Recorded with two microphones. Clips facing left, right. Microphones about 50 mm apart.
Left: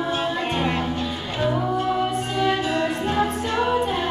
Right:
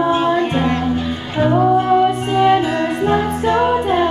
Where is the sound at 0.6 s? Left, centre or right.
Centre.